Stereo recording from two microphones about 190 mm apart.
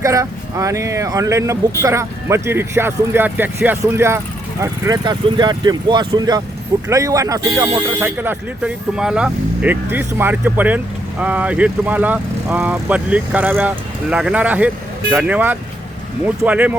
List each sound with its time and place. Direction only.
0.0 s speech: 15° right (ahead or behind)